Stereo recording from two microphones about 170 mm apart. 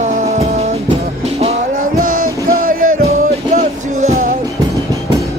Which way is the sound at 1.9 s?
55° right (ahead or behind).